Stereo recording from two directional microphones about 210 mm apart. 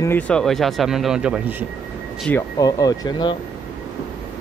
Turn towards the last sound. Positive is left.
turn(degrees=20)  # may be behind; listen again after turning